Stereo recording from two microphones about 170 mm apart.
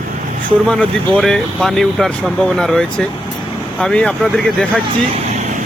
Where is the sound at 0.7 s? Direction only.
5° left (ahead or behind).